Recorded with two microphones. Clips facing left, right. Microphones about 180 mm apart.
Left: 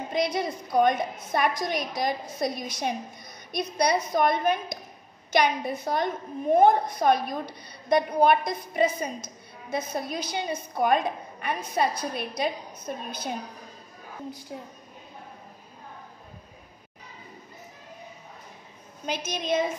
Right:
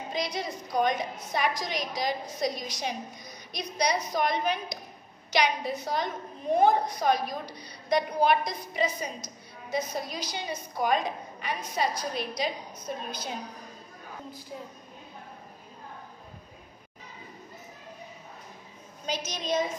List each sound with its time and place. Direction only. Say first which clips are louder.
0.1 s a woman's voice: left 6 dB; 55° left (ahead or behind)
19.0 s a woman's voice: left 3 dB; 55° left (ahead or behind)